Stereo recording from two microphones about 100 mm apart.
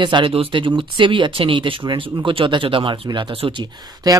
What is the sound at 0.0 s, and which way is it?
Speech, 55° right (ahead or behind).